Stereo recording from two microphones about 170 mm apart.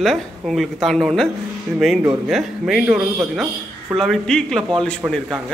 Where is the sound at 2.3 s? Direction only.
Centre (ahead or behind).